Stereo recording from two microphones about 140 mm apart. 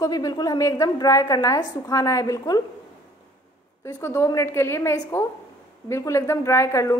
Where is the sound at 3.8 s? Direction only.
20° left (ahead or behind).